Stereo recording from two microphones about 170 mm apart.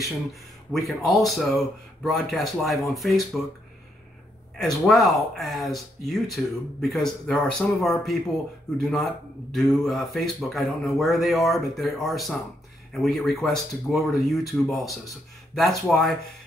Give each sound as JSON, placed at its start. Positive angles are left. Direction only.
{"t": 0.0, "sound": "speech", "side_deg": 0}
{"t": 4.6, "sound": "speech", "side_deg": 0}